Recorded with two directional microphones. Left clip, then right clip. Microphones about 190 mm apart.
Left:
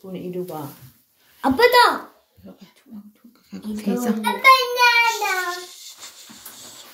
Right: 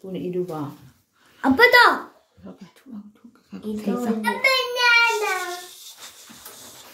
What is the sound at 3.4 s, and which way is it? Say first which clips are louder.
Speech: even; 5° right (ahead or behind).